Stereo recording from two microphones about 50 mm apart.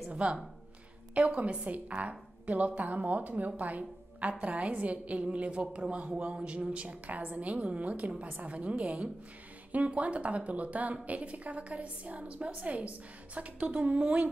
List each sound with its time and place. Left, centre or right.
0.1 s a woman's voice: right